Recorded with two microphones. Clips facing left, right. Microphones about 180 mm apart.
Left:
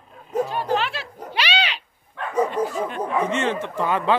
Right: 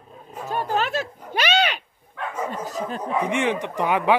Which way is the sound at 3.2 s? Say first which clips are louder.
Even; 15° right (ahead or behind).